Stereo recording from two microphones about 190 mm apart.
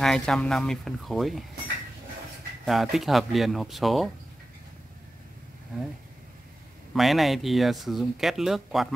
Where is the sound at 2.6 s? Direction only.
Centre (ahead or behind).